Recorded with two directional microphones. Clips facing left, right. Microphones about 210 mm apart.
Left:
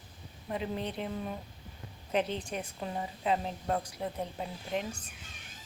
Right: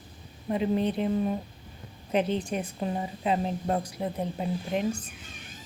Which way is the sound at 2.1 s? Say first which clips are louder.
Right 5 dB; 15° right (ahead or behind).